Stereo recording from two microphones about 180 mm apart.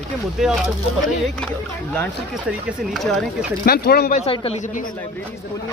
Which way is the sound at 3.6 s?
55° left (ahead or behind).